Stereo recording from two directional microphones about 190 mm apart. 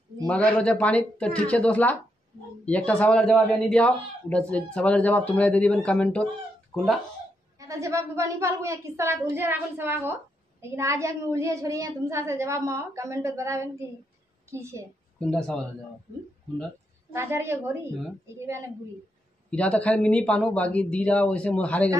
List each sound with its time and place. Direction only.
0.3 s a man's voice: 5° left (ahead or behind)
7.5 s a woman's voice: 15° right (ahead or behind)
15.1 s speech: 5° left (ahead or behind)
17.1 s a woman's voice: 15° right (ahead or behind)
19.5 s a man's voice: 5° left (ahead or behind)